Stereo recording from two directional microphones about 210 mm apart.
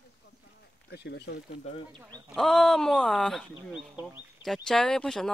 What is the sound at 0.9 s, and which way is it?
Speech, 50° left (ahead or behind).